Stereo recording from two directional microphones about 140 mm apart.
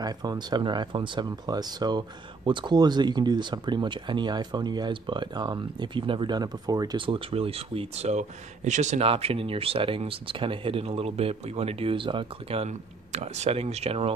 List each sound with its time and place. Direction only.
0.0 s speech: 30° right (ahead or behind)
7.2 s speech: 45° right (ahead or behind)